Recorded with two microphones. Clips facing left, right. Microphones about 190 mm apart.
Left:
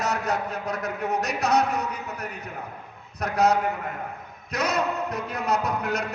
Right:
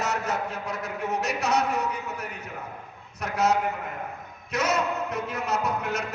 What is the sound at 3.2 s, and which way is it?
A man's voice, 35° left (ahead or behind).